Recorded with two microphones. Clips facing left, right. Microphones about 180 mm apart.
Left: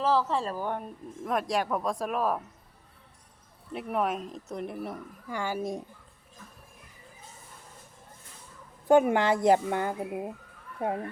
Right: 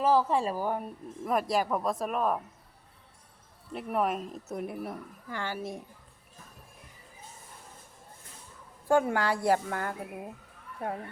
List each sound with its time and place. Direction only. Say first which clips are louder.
0.0 s speech: right 1 dB; 15° right (ahead or behind)
3.7 s speech: even; centre (ahead or behind)
5.3 s speech: left 4 dB; 15° left (ahead or behind)
8.9 s speech: left 4 dB; 20° left (ahead or behind)